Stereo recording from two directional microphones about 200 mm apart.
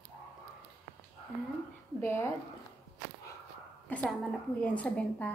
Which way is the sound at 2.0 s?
10° left (ahead or behind).